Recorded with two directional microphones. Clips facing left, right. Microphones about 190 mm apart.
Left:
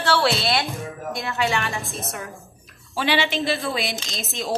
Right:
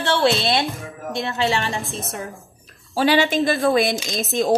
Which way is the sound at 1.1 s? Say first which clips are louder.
Right 4 dB; 35° right (ahead or behind).